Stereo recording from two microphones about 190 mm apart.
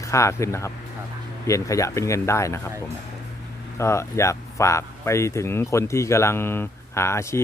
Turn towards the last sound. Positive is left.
turn(degrees=15)  # may be behind; listen again after turning